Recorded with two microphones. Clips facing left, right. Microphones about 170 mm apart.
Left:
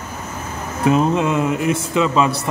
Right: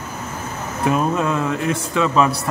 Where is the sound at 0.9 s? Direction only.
20° left (ahead or behind).